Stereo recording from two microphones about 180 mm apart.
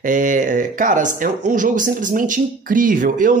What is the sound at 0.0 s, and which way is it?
Speech, 45° right (ahead or behind).